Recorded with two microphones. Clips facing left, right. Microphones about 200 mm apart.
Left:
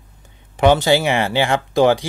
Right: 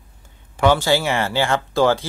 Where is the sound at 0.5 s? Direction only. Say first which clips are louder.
Left 3 dB; 20° left (ahead or behind).